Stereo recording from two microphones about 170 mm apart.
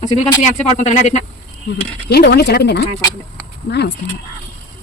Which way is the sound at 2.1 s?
70° left (ahead or behind).